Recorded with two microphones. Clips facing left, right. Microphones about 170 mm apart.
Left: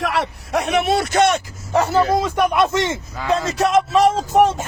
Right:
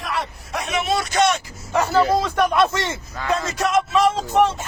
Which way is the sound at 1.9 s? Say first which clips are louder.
Left 1 dB; 20° left (ahead or behind).